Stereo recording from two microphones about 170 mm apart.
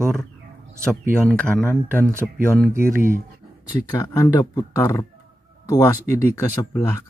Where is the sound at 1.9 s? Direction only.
15° right (ahead or behind).